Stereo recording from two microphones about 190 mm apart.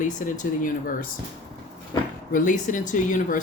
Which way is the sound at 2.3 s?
45° left (ahead or behind).